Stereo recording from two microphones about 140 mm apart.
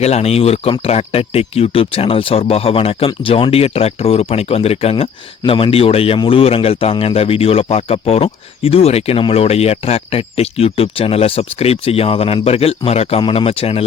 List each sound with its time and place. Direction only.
0.0 s speech: 50° left (ahead or behind)